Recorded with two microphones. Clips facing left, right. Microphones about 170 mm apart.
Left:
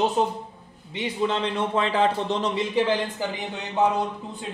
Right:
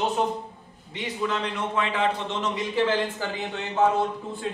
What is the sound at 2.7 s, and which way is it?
A man's voice, 15° left (ahead or behind).